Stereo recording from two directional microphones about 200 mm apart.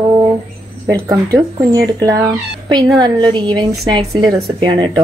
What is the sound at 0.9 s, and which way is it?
A woman's voice, 15° right (ahead or behind).